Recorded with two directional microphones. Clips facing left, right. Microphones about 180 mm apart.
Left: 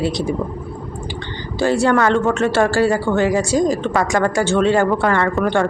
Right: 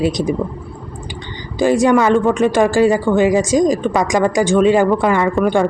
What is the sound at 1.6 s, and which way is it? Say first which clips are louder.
A woman's voice: right 3 dB; 15° right (ahead or behind).